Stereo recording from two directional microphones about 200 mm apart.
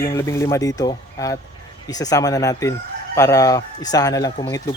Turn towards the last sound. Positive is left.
turn(degrees=15)  # may be behind; listen again after turning